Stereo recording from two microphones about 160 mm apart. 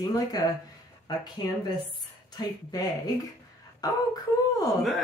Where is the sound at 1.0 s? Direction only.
25° left (ahead or behind).